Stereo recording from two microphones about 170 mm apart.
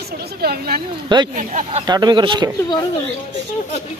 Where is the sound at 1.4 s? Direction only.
45° right (ahead or behind).